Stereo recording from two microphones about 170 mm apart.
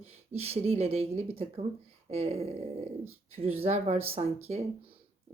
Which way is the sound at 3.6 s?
40° right (ahead or behind).